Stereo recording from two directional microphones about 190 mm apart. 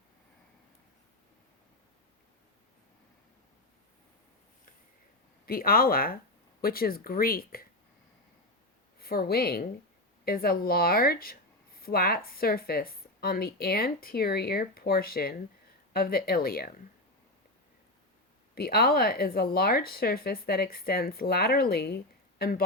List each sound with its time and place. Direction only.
5.5 s speech: 50° left (ahead or behind)
9.0 s a woman's voice: 55° left (ahead or behind)
18.5 s speech: 55° left (ahead or behind)